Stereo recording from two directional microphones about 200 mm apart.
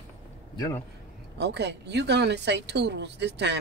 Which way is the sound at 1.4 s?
60° right (ahead or behind).